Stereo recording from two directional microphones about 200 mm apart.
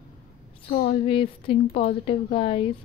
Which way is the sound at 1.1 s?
25° left (ahead or behind).